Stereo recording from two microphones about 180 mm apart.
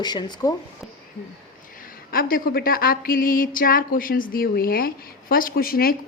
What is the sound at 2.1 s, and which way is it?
Speech, 50° left (ahead or behind).